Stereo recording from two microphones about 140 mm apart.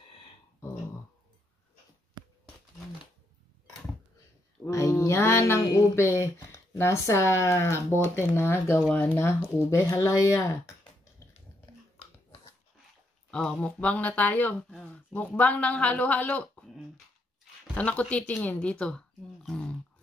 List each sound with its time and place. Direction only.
4.6 s speech: 20° left (ahead or behind)
13.3 s speech: 5° left (ahead or behind)